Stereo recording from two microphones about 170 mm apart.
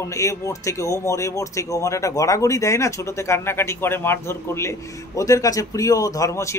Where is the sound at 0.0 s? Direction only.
20° left (ahead or behind).